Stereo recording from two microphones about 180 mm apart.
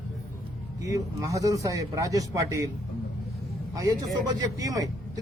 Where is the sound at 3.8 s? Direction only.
20° right (ahead or behind).